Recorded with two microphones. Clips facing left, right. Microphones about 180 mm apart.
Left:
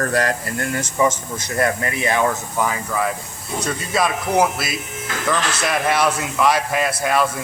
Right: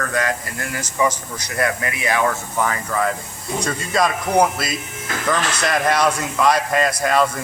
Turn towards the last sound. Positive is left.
turn(degrees=5)  # may be behind; listen again after turning